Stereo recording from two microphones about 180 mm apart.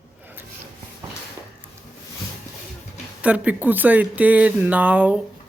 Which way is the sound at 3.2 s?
10° right (ahead or behind).